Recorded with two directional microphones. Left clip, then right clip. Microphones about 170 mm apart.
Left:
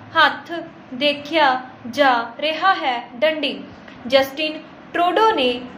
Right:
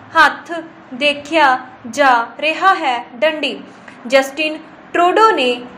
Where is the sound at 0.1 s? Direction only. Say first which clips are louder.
Right 4 dB; 25° right (ahead or behind).